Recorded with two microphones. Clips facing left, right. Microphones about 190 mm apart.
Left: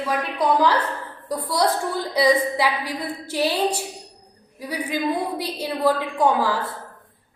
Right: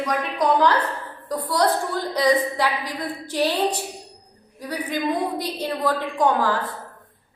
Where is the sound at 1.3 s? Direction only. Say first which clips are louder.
Right 1 dB; 10° left (ahead or behind).